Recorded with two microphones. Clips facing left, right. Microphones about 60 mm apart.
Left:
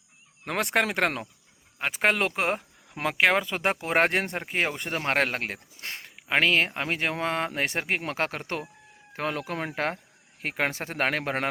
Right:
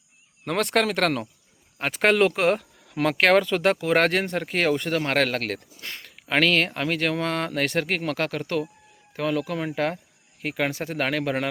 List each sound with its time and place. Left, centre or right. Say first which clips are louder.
0.4 s speech: right 3 dB; centre; by 11.4 s left